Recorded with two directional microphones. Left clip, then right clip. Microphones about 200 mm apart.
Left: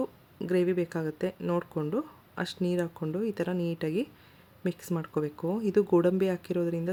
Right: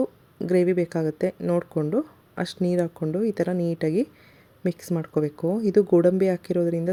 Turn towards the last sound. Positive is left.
turn(degrees=-10)  # may be behind; listen again after turning